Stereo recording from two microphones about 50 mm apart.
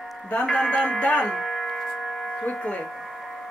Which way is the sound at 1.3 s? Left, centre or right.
Centre.